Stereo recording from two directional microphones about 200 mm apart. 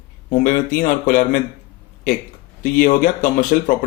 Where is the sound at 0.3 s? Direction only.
40° left (ahead or behind).